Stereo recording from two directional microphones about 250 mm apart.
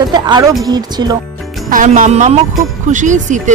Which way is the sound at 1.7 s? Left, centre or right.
Right.